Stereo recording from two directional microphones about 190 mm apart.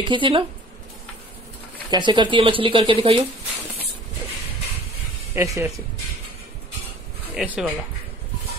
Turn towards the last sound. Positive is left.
turn(degrees=-5)  # may be behind; listen again after turning